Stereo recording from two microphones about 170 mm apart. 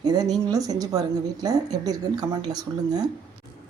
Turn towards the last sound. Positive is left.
turn(degrees=-25)  # may be behind; listen again after turning